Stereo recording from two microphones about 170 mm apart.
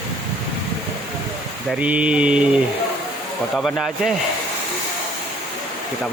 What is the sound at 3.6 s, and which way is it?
Speech, centre (ahead or behind).